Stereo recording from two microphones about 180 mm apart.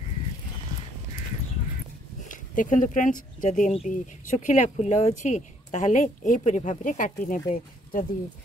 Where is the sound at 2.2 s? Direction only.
45° left (ahead or behind).